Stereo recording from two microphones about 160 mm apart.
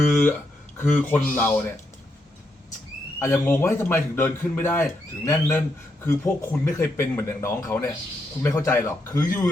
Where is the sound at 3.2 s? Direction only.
15° left (ahead or behind).